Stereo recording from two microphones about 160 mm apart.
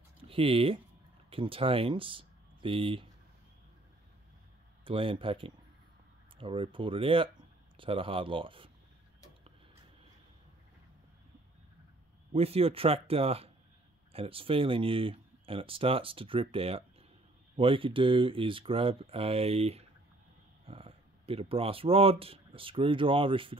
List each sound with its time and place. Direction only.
0.2 s speech: 35° right (ahead or behind)
4.8 s speech: 35° right (ahead or behind)
12.3 s speech: 40° right (ahead or behind)